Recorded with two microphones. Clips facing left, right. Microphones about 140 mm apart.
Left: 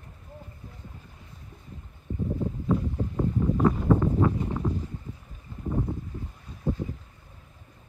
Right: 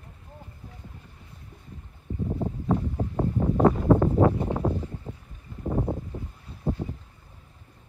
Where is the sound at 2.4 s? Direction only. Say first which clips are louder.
Right 1 dB; 35° right (ahead or behind).